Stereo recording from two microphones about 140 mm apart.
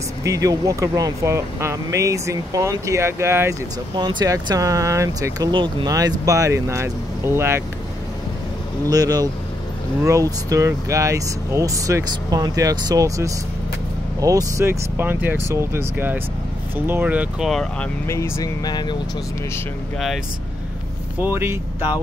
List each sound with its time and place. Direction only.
0.2 s speech: 25° right (ahead or behind)
3.9 s speech: 30° right (ahead or behind)
5.5 s speech: 35° right (ahead or behind); by 7.6 s 20° right (ahead or behind)
8.8 s speech: 25° right (ahead or behind); by 17.5 s 10° right (ahead or behind)
17.5 s speech: 5° left (ahead or behind)
18.0 s speech: 20° left (ahead or behind)
21.2 s speech: 15° right (ahead or behind)